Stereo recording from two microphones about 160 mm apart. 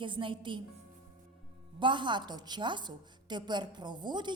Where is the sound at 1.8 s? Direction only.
30° right (ahead or behind).